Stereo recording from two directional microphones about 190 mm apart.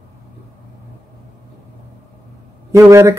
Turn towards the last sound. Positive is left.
turn(degrees=-15)  # may be behind; listen again after turning